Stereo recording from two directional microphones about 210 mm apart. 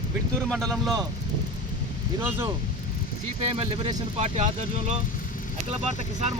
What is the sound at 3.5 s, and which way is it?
Speech, 25° right (ahead or behind).